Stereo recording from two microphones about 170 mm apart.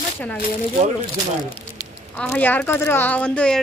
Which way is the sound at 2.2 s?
10° left (ahead or behind).